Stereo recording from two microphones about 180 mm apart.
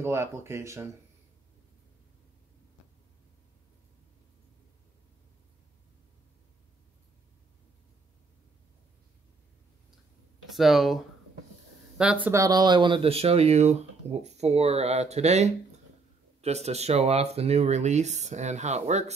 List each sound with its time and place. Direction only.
0.0 s speech: 15° right (ahead or behind)
10.5 s speech: centre (ahead or behind); by 19.1 s 40° right (ahead or behind)